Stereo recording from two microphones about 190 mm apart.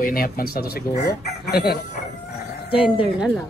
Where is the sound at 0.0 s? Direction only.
50° left (ahead or behind).